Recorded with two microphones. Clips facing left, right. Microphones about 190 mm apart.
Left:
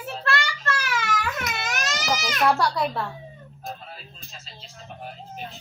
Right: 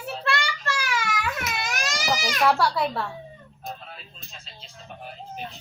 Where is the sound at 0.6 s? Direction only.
5° right (ahead or behind).